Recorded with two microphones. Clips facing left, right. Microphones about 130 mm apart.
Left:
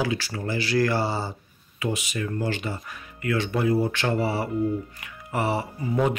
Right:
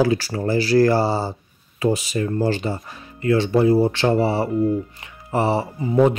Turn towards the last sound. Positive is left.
turn(degrees=-30)  # may be behind; listen again after turning